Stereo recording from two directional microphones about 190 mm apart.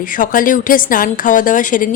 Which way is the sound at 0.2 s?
45° left (ahead or behind).